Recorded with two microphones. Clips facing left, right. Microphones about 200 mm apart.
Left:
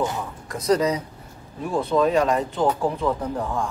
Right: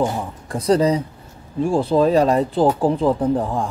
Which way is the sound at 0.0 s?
25° right (ahead or behind).